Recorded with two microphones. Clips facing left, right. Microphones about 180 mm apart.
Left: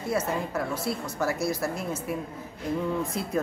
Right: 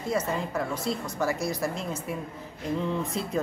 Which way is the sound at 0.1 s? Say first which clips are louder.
Even; 5° left (ahead or behind).